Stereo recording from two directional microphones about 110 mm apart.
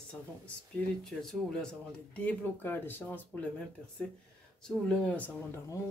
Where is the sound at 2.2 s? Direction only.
20° left (ahead or behind).